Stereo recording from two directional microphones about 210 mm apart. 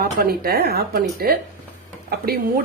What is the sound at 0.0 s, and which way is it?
A woman's voice, 45° right (ahead or behind).